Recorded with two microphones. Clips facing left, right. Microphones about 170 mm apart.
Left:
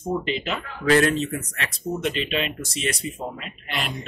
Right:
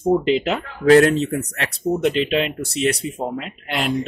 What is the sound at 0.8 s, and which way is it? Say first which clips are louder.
Speech: right 7 dB; 40° right (ahead or behind).